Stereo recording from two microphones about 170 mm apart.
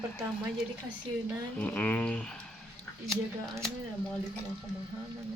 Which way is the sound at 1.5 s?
10° left (ahead or behind).